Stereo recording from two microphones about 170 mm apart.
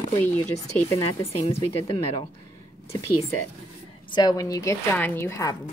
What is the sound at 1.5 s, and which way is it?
Speech, 30° left (ahead or behind).